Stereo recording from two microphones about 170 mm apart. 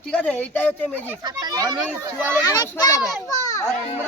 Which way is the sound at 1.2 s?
20° right (ahead or behind).